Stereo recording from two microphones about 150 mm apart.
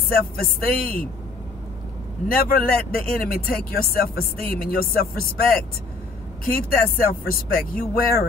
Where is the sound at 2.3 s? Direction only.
75° left (ahead or behind).